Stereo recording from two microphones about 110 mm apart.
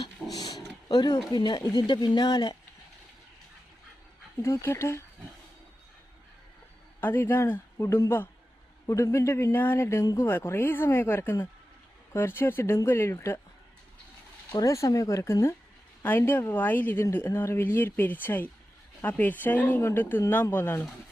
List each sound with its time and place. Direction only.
0.3 s a sound: 35° left (ahead or behind)
1.3 s speech: 40° left (ahead or behind)
4.4 s a man's voice: 25° left (ahead or behind)
7.0 s a man's voice: 20° left (ahead or behind)
14.6 s a man's voice: 30° left (ahead or behind)